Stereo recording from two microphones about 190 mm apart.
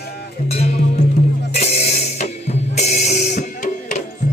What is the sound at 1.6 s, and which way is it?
Music, 35° left (ahead or behind).